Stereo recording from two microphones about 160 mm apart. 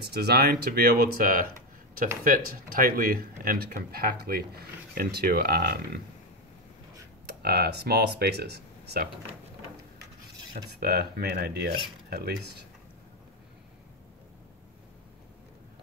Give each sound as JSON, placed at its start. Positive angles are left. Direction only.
{"t": 0.0, "sound": "speech", "side_deg": -85}
{"t": 7.2, "sound": "speech", "side_deg": -80}
{"t": 10.7, "sound": "speech", "side_deg": -80}